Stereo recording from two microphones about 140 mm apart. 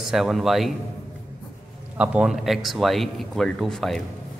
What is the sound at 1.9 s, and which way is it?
A man's voice, 10° right (ahead or behind).